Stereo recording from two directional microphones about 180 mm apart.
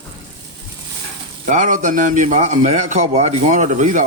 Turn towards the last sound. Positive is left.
turn(degrees=-45)  # may be behind; listen again after turning